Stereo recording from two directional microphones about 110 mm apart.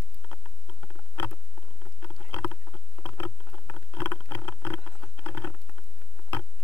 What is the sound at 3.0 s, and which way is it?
Patter, 25° left (ahead or behind).